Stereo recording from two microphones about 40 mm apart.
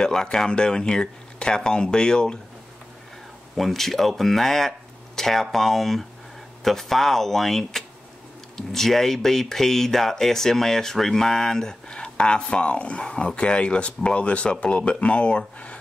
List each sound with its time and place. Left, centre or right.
0.0 s speech: centre
3.5 s speech: centre; by 15.8 s left